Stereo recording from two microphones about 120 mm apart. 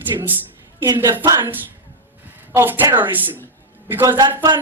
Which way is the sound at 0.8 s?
35° right (ahead or behind).